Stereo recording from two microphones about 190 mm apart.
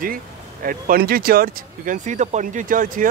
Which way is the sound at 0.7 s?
50° right (ahead or behind).